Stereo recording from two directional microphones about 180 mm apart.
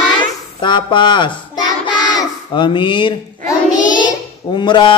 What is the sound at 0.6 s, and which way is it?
Child singing, 25° left (ahead or behind).